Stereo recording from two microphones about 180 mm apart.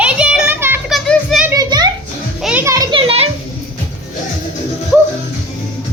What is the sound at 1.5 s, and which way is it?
Children playing, 20° right (ahead or behind).